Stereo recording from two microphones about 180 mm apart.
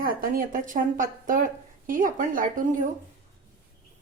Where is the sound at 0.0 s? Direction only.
55° right (ahead or behind).